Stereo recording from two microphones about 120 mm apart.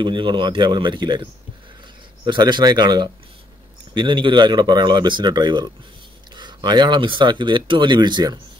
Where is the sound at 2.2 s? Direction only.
40° right (ahead or behind).